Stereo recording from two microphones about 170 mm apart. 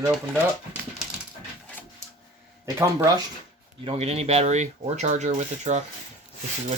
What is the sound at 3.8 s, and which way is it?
Speech, 35° right (ahead or behind).